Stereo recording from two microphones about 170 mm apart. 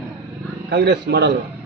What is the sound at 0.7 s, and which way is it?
Speech, 90° right.